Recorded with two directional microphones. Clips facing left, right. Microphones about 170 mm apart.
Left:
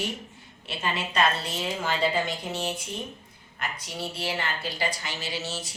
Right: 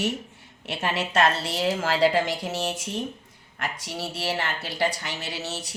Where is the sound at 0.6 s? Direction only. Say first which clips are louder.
Right 3 dB; 80° right; by 5.8 s 65° right (ahead or behind).